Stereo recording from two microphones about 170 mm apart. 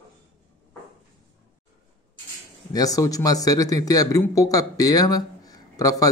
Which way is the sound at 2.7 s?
20° left (ahead or behind).